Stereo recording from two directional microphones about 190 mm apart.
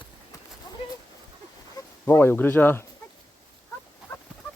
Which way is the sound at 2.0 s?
15° left (ahead or behind).